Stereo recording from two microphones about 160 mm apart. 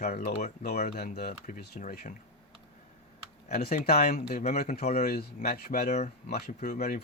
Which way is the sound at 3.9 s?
45° left (ahead or behind).